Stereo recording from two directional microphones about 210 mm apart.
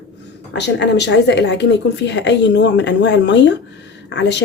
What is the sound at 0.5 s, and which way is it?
A woman's voice, 55° left (ahead or behind).